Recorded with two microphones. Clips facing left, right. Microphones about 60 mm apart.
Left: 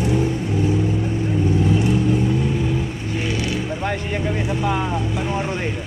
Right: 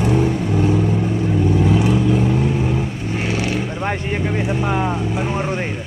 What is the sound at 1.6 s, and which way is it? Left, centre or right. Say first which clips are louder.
Vehicle: right 2 dB; right.